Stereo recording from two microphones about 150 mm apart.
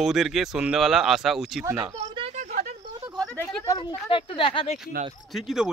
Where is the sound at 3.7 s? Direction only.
30° left (ahead or behind).